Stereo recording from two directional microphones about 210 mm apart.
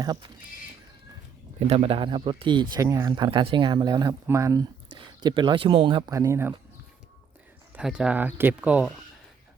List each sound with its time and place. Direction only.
0.0 s speech: 20° right (ahead or behind)
1.5 s speech: 30° right (ahead or behind); by 6.5 s 15° right (ahead or behind)
7.8 s speech: 5° right (ahead or behind)